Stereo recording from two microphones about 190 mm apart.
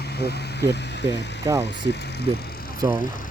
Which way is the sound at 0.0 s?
60° left (ahead or behind).